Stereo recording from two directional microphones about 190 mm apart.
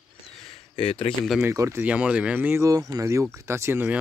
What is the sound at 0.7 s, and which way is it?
Speech, 30° left (ahead or behind).